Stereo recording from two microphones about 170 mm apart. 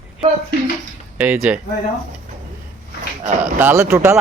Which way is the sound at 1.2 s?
10° right (ahead or behind).